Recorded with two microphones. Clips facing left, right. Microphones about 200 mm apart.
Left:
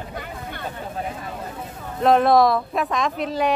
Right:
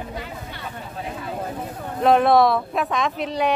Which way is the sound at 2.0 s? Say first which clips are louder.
Even; centre (ahead or behind).